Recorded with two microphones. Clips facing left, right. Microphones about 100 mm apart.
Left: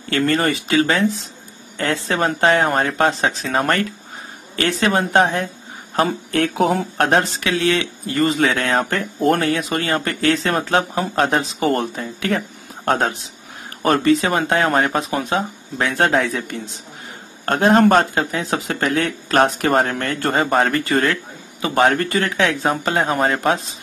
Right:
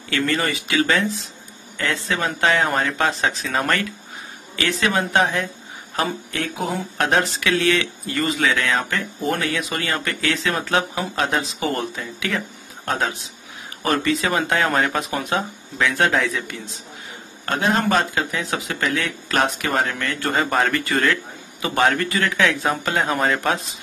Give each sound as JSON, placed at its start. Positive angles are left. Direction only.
{"t": 0.1, "sound": "speech", "side_deg": 45}
{"t": 5.9, "sound": "speech", "side_deg": 55}
{"t": 7.0, "sound": "speech", "side_deg": 35}
{"t": 9.4, "sound": "speech", "side_deg": 40}
{"t": 12.8, "sound": "speech", "side_deg": 55}
{"t": 13.8, "sound": "speech", "side_deg": 40}